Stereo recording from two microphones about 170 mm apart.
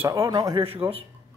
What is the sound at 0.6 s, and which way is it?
Speech, 35° right (ahead or behind).